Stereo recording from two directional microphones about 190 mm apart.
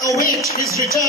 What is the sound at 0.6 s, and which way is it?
Speech, 15° right (ahead or behind).